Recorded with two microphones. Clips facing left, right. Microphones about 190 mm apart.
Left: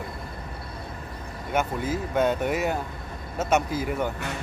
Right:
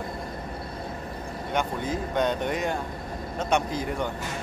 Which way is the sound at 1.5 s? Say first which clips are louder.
Left 2 dB; 5° left (ahead or behind).